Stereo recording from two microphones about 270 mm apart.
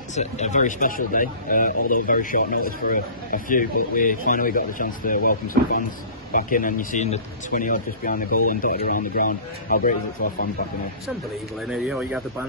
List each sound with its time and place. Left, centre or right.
0.1 s speech: left
11.7 s speech: centre